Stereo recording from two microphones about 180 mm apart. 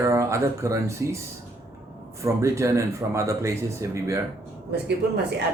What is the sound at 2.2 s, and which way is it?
Speech, 15° right (ahead or behind).